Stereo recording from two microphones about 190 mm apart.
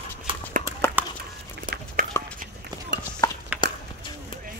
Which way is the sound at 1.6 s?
45° right (ahead or behind).